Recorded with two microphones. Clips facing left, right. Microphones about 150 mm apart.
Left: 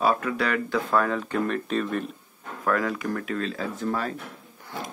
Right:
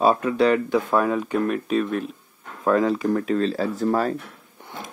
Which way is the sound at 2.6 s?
25° right (ahead or behind).